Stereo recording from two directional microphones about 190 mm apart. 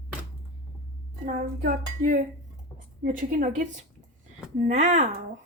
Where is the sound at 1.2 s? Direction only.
45° right (ahead or behind).